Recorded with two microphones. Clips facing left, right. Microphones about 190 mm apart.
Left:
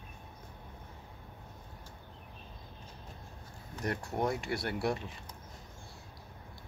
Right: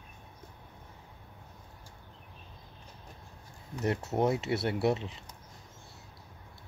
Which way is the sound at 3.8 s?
25° right (ahead or behind).